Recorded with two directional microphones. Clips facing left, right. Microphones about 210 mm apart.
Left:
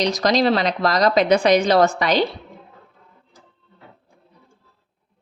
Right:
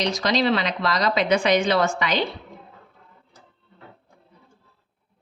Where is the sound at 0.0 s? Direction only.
40° left (ahead or behind).